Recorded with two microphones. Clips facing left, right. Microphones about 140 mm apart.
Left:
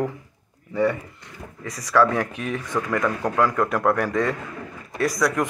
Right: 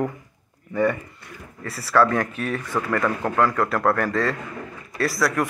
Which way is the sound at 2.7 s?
10° right (ahead or behind).